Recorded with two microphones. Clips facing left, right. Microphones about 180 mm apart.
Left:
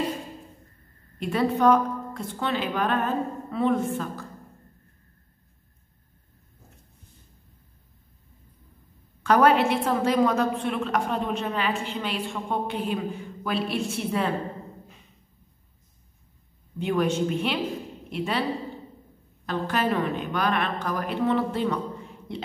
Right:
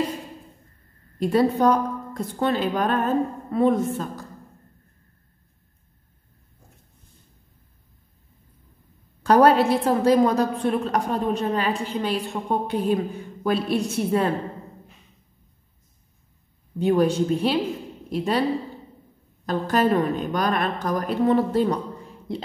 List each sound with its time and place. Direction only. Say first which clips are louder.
1.2 s a woman's voice: right 3 dB; 35° right (ahead or behind)
9.2 s a woman's voice: right 3 dB; 35° right (ahead or behind)
16.7 s a woman's voice: right 5 dB; 35° right (ahead or behind)
19.4 s a woman's voice: right 5 dB; 40° right (ahead or behind)